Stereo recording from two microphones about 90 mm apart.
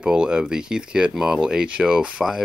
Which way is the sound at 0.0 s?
10° right (ahead or behind).